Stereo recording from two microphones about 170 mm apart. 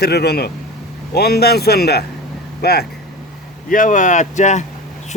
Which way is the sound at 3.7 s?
50° left (ahead or behind).